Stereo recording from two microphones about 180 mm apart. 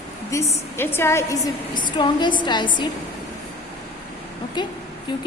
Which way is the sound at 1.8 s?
25° left (ahead or behind).